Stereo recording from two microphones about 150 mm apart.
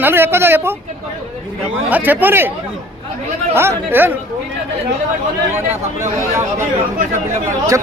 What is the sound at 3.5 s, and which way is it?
Speech, 15° right (ahead or behind).